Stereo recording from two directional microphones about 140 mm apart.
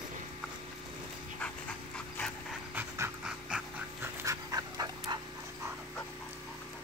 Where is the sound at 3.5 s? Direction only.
5° right (ahead or behind).